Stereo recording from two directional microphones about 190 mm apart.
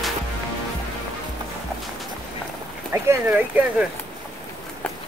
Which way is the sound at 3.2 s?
10° right (ahead or behind).